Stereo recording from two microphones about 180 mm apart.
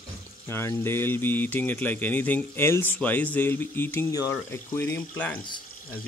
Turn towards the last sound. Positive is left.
turn(degrees=10)  # may be behind; listen again after turning